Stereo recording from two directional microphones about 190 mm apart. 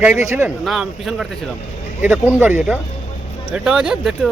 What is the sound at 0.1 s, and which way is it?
Speech, 35° left (ahead or behind).